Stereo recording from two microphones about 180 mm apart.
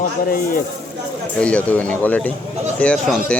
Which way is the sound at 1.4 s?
5° left (ahead or behind).